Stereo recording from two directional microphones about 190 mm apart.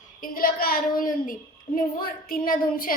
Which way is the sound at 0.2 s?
50° left (ahead or behind).